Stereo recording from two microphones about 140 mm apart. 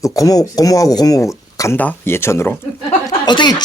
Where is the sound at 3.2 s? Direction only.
30° left (ahead or behind).